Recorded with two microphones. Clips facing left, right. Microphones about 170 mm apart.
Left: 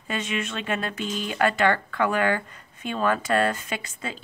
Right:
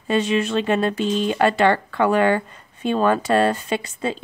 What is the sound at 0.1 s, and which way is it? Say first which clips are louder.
Speech: right 10 dB; 30° right (ahead or behind).